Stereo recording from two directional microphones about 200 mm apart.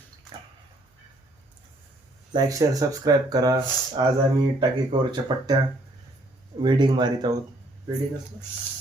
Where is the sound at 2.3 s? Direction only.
20° right (ahead or behind).